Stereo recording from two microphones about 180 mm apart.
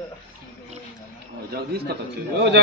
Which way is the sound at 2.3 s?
70° right (ahead or behind).